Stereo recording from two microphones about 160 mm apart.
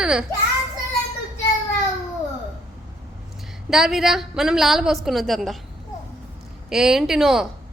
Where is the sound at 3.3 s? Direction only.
Centre (ahead or behind).